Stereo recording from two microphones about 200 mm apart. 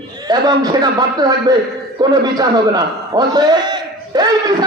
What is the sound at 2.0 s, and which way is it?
A man's voice, 20° right (ahead or behind).